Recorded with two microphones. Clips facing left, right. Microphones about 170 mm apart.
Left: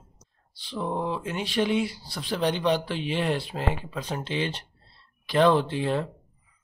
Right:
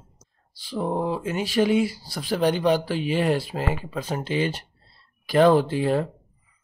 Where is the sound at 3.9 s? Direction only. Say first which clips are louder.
Right 4 dB; 45° right (ahead or behind).